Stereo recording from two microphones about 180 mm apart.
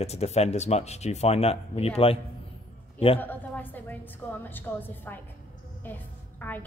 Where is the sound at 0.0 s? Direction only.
35° left (ahead or behind).